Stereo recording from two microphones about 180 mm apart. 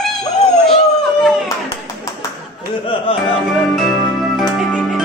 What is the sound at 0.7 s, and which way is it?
Howl, centre (ahead or behind).